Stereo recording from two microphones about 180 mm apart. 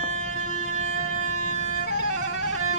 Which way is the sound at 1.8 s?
65° left (ahead or behind).